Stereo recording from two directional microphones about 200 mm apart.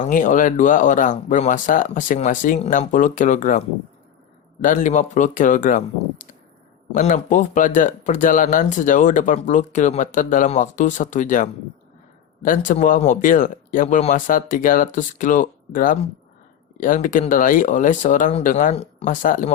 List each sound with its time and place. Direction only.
0.0 s speech: 40° left (ahead or behind)
4.6 s speech: 40° left (ahead or behind)